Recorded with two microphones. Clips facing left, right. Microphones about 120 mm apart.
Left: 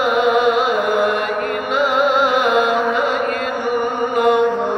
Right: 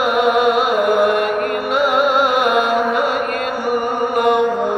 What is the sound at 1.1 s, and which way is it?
Mantra, 50° right (ahead or behind).